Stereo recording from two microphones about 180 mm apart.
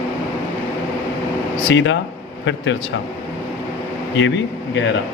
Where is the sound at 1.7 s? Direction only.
90° left.